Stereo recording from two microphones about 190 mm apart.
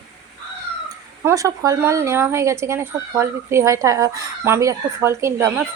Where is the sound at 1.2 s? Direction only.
15° right (ahead or behind).